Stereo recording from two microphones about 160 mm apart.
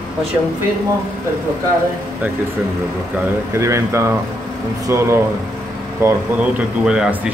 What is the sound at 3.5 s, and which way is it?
Speech, 15° right (ahead or behind).